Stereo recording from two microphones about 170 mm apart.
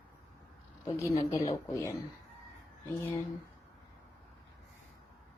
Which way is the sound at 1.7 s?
20° left (ahead or behind).